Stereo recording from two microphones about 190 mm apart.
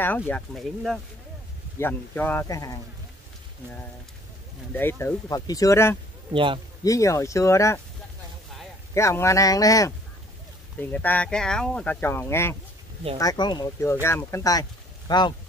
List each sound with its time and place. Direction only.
0.3 s speech: centre (ahead or behind); by 2.8 s 20° left (ahead or behind)
4.7 s speech: 10° left (ahead or behind)
6.3 s speech: 25° right (ahead or behind)
6.8 s speech: 15° left (ahead or behind)
8.9 s speech: 15° left (ahead or behind)